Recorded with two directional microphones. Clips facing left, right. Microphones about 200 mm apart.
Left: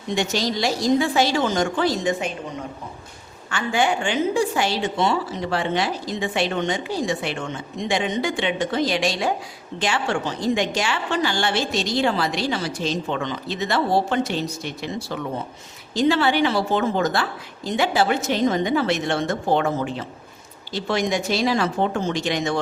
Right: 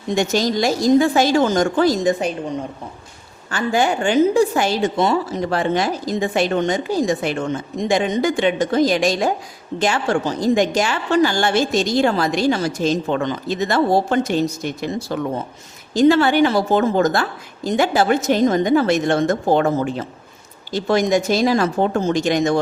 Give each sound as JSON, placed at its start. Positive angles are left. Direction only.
{"t": 0.1, "sound": "a woman's voice", "side_deg": -45}
{"t": 3.5, "sound": "a woman's voice", "side_deg": -40}